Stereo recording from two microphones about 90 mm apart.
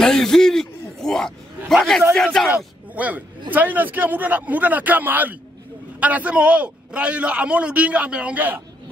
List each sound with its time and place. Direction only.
0.0 s a man's voice: 5° left (ahead or behind)
2.5 s a man's voice: 15° right (ahead or behind)